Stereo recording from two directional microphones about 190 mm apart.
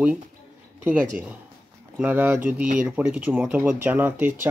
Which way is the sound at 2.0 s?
10° right (ahead or behind).